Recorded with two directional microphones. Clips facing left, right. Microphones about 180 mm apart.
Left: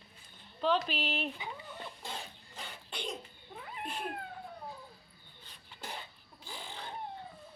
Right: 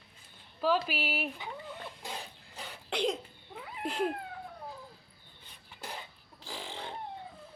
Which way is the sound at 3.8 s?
90° right.